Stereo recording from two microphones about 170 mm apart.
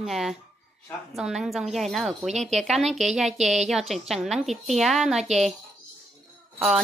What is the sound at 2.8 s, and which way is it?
Speech, 40° right (ahead or behind).